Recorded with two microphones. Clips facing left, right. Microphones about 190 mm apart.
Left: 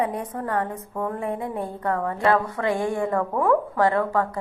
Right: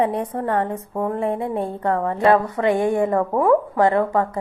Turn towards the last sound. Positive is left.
turn(degrees=-20)  # may be behind; listen again after turning